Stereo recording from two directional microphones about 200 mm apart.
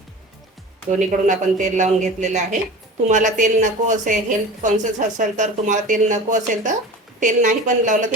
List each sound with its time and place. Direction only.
0.9 s a woman's voice: 40° right (ahead or behind)